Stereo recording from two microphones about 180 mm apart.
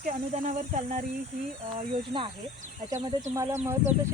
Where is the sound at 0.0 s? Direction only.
40° right (ahead or behind).